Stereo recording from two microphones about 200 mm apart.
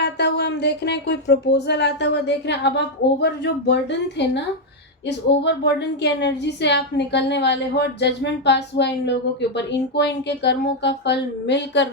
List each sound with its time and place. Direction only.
0.0 s speech: 60° left (ahead or behind)